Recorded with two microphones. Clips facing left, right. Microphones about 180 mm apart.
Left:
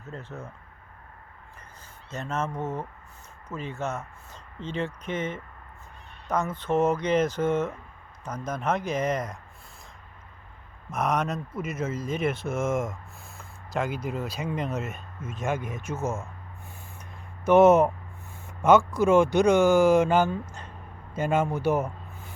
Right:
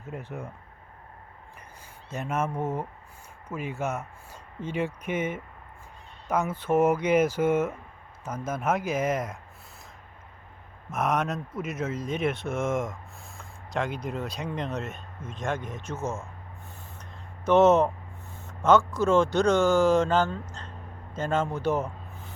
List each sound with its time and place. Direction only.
0.0 s speech: 15° right (ahead or behind)
2.0 s speech: 10° right (ahead or behind)
10.9 s speech: centre (ahead or behind)
17.0 s a sound: 10° left (ahead or behind)
18.4 s speech: 10° left (ahead or behind)